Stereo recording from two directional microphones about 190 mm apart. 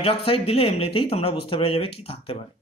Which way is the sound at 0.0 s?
30° left (ahead or behind).